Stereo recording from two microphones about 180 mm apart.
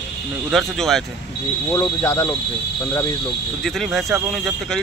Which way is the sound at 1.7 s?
20° left (ahead or behind).